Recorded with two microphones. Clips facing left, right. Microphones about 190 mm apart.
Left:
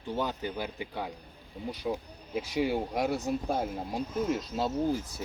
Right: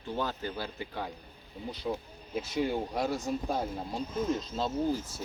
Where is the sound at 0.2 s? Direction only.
15° left (ahead or behind).